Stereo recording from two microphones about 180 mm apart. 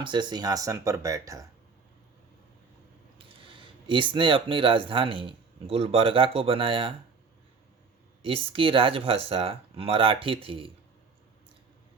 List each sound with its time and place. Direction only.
0.0 s speech: 25° right (ahead or behind)
3.2 s speech: 30° right (ahead or behind)
8.2 s speech: 30° right (ahead or behind)